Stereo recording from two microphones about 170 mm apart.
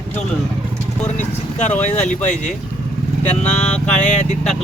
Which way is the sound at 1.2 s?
45° left (ahead or behind).